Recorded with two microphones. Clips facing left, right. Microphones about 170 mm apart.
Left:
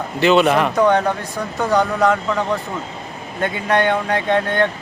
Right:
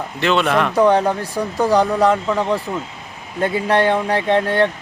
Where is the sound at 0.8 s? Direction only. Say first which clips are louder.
Right 3 dB; 30° right (ahead or behind).